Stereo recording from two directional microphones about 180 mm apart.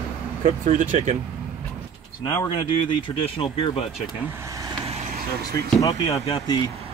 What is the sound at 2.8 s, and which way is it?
Speech, 30° left (ahead or behind).